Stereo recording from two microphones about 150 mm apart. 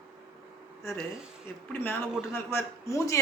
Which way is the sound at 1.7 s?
15° left (ahead or behind).